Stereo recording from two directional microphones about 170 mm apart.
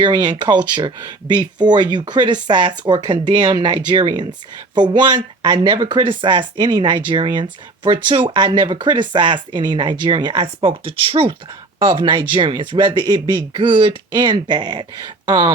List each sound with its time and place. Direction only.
0.0 s speech: 25° right (ahead or behind)